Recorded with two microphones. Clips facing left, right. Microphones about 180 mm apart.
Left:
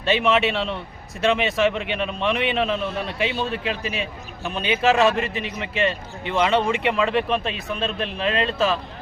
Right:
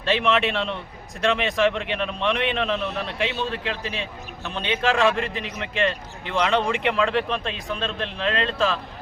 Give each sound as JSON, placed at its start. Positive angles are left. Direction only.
{"t": 0.0, "sound": "a man's voice", "side_deg": 5}